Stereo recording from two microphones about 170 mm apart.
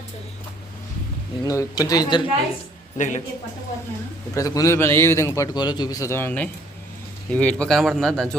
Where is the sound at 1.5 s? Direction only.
20° left (ahead or behind).